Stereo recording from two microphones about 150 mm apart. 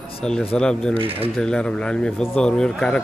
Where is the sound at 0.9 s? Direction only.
40° right (ahead or behind).